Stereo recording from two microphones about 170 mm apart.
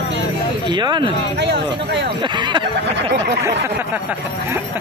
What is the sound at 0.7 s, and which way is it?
Speech, 25° right (ahead or behind).